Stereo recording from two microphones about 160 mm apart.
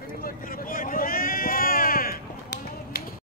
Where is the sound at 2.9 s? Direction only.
80° left.